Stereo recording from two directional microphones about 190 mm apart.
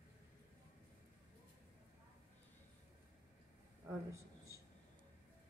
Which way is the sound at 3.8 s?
15° right (ahead or behind).